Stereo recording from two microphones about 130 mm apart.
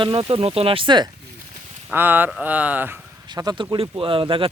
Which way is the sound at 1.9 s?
15° right (ahead or behind).